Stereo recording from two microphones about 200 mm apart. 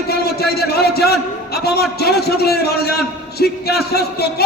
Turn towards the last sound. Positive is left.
turn(degrees=55)  # may be behind; listen again after turning